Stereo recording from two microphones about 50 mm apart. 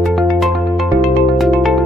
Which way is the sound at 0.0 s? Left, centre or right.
Centre.